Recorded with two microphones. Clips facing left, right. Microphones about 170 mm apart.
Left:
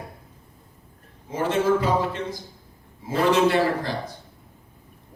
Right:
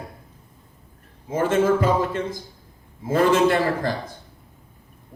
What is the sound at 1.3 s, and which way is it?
A man's voice, 50° right (ahead or behind).